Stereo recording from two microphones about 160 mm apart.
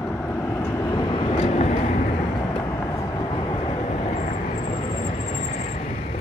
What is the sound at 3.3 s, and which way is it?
Vehicle, 30° left (ahead or behind).